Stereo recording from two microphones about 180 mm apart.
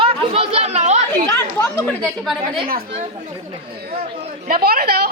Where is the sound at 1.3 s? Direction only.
10° left (ahead or behind).